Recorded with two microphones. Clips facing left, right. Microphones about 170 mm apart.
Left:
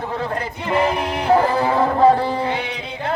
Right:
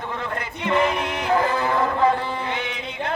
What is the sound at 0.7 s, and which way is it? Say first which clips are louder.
Music: left 2 dB; 35° left (ahead or behind).